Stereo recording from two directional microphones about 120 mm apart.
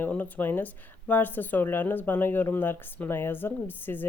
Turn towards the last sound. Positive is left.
turn(degrees=15)  # may be behind; listen again after turning